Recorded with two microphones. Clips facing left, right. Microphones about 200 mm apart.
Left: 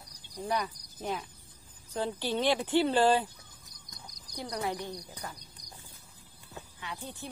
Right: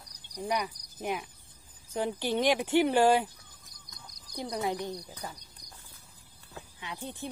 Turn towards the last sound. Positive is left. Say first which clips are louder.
# right 2 dB
turn(degrees=-20)  # may be behind; listen again after turning